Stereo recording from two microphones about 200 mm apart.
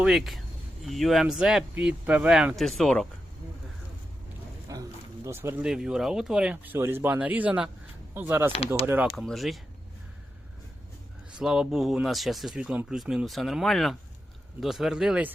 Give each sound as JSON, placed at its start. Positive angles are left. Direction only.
{"t": 0.0, "sound": "speech", "side_deg": 0}
{"t": 4.7, "sound": "speech", "side_deg": -15}
{"t": 8.5, "sound": "speech", "side_deg": 30}
{"t": 8.9, "sound": "speech", "side_deg": -5}
{"t": 11.3, "sound": "speech", "side_deg": -5}